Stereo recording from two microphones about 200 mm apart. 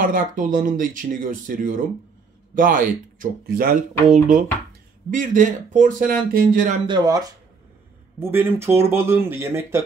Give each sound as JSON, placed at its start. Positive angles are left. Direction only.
{"t": 0.0, "sound": "speech", "side_deg": -45}
{"t": 5.1, "sound": "speech", "side_deg": -40}
{"t": 6.9, "sound": "speech", "side_deg": -20}